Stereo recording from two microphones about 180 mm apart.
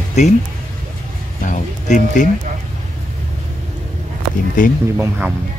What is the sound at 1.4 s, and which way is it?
Speech, 45° left (ahead or behind).